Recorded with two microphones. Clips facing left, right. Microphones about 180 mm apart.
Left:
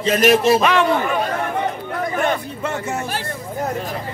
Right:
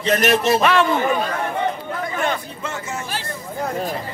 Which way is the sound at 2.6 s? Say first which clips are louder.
Left 5 dB; 60° left (ahead or behind).